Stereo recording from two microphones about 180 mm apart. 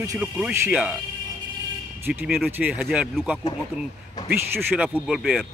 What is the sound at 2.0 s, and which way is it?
Speech, 10° right (ahead or behind).